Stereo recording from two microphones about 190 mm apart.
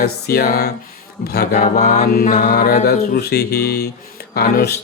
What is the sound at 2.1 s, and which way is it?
Music, 50° left (ahead or behind).